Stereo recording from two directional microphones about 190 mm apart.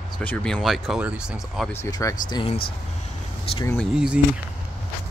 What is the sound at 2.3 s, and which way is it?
Speech, 25° left (ahead or behind).